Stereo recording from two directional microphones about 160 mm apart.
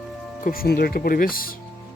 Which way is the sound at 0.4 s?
65° left (ahead or behind).